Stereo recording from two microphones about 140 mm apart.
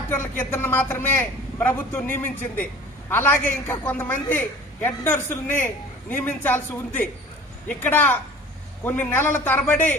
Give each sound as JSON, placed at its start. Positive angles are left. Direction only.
{"t": 0.4, "sound": "a man's voice", "side_deg": 15}